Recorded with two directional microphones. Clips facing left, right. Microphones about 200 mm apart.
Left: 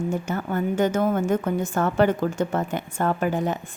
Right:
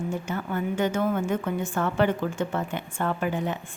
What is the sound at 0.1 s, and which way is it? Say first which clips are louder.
A woman's voice: left 3 dB; 45° left (ahead or behind).